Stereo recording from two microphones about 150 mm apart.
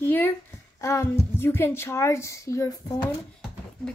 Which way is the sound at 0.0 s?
15° left (ahead or behind).